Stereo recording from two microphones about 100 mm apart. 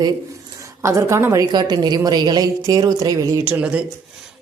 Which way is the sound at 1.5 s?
45° right (ahead or behind).